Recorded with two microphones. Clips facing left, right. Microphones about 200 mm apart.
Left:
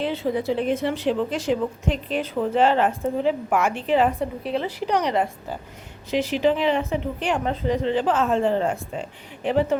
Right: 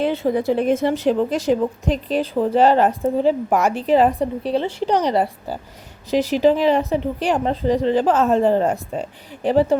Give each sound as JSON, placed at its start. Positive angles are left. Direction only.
{"t": 0.0, "sound": "a woman's voice", "side_deg": -50}